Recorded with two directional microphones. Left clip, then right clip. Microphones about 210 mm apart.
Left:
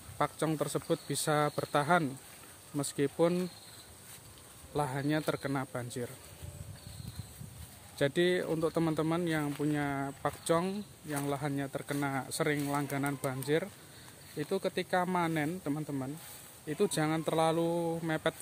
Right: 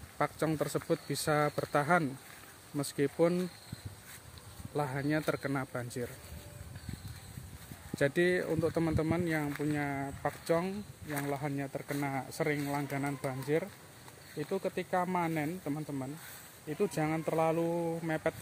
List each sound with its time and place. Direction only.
0.2 s speech: centre (ahead or behind)
4.7 s speech: 5° left (ahead or behind)
8.0 s speech: centre (ahead or behind)